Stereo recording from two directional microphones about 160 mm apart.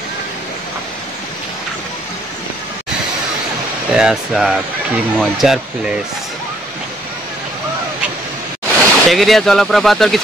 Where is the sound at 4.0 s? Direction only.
5° right (ahead or behind).